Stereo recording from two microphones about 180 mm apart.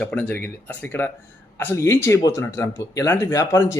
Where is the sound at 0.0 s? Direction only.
5° left (ahead or behind).